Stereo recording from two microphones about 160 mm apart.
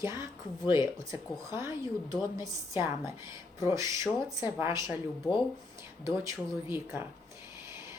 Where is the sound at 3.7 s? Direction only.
20° right (ahead or behind).